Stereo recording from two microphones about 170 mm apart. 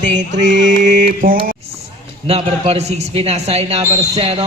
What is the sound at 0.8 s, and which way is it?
Mantra, 55° right (ahead or behind).